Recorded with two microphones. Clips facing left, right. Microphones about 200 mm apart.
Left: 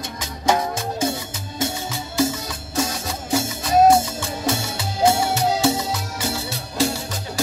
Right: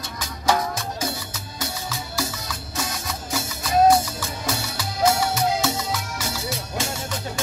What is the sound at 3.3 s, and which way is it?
Music, 30° left (ahead or behind).